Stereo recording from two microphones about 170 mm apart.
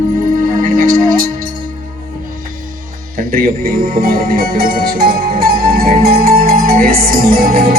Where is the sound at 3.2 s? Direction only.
60° right (ahead or behind).